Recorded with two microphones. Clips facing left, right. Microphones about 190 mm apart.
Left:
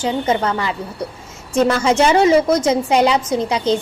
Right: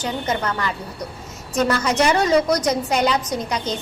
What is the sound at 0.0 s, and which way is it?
Speech, 30° left (ahead or behind).